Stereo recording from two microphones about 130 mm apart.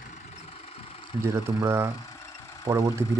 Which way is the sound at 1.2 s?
20° right (ahead or behind).